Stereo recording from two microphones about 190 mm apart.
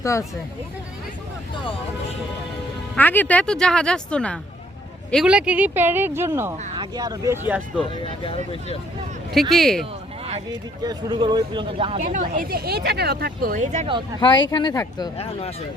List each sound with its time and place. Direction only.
0.0 s speech: 15° left (ahead or behind)
2.9 s speech: 10° left (ahead or behind); by 7.3 s 20° right (ahead or behind)
7.8 s speech: 25° left (ahead or behind)
9.3 s speech: centre (ahead or behind)
10.8 s speech: 25° right (ahead or behind)
14.5 s speech: 20° left (ahead or behind)